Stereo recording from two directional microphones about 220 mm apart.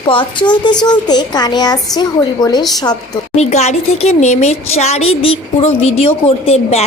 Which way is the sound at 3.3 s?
30° left (ahead or behind).